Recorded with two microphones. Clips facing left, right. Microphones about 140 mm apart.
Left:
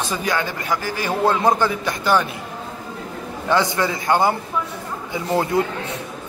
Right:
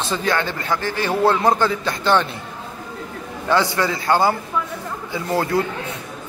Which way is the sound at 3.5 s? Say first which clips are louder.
Even; 20° left (ahead or behind).